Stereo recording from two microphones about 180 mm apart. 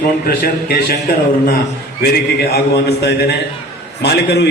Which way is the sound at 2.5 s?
65° left (ahead or behind).